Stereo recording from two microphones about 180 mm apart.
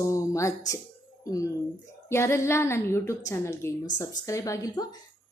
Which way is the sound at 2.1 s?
15° left (ahead or behind).